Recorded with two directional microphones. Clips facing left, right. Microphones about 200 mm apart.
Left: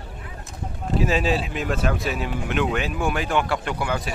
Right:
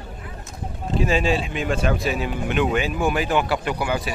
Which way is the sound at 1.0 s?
Centre (ahead or behind).